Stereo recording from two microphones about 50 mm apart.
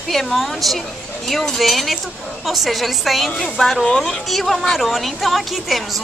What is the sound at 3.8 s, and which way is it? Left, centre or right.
Speech, centre.